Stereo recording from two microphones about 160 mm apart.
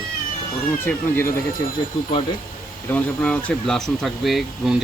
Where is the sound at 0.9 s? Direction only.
15° left (ahead or behind).